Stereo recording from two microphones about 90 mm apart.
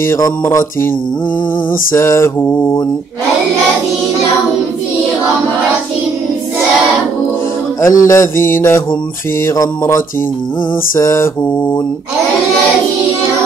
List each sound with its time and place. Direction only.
0.0 s mantra: 30° left (ahead or behind)
1.9 s mantra: 30° left (ahead or behind)
7.8 s mantra: 35° left (ahead or behind)